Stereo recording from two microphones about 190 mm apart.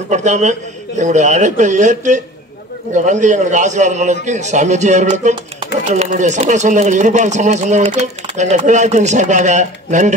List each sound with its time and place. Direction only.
0.1 s speech: 40° right (ahead or behind)